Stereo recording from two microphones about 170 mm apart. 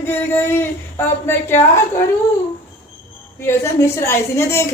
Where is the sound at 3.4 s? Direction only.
15° left (ahead or behind).